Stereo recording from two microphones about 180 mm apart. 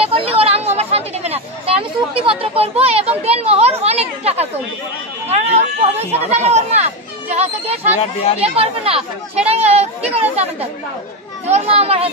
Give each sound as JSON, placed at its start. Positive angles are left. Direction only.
{"t": 0.0, "sound": "a sound", "side_deg": -30}
{"t": 2.2, "sound": "speech", "side_deg": -35}
{"t": 8.0, "sound": "speech", "side_deg": 35}
{"t": 8.4, "sound": "speech", "side_deg": -35}